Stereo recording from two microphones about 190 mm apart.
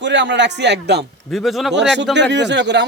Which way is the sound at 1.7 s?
65° right (ahead or behind).